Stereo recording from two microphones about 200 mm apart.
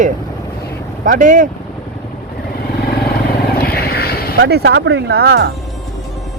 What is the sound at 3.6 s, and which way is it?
Vehicle, 50° left (ahead or behind).